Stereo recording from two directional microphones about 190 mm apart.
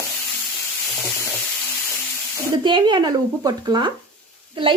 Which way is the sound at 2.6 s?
25° right (ahead or behind).